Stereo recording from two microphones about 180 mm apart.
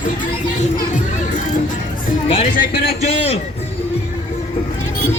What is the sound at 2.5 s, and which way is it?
Speech, 60° left (ahead or behind).